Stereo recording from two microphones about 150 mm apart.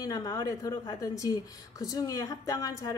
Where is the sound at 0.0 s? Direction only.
25° left (ahead or behind).